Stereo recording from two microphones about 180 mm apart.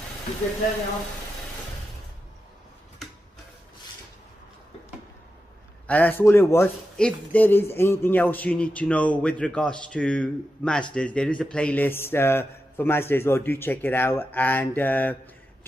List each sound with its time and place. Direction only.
5.9 s speech: 10° left (ahead or behind)